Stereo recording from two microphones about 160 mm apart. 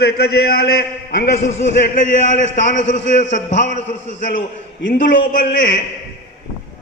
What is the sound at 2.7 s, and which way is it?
A man's voice, 50° left (ahead or behind).